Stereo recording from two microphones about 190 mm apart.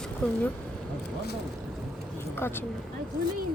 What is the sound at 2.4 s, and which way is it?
Speech, 10° left (ahead or behind).